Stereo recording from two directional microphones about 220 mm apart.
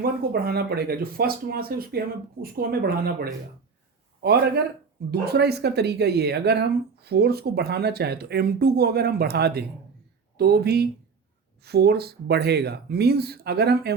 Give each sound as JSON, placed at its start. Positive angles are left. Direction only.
{"t": 0.0, "sound": "speech", "side_deg": -45}